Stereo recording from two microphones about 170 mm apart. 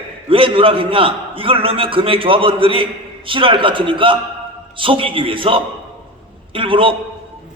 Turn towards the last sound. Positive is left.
turn(degrees=-30)  # may be behind; listen again after turning